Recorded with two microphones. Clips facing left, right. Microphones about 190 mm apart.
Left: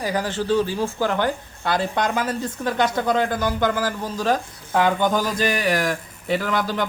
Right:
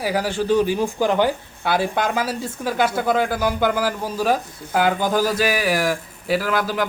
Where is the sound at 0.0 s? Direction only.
10° right (ahead or behind).